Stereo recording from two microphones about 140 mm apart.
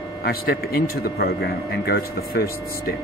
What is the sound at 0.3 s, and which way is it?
Speech, 90° left.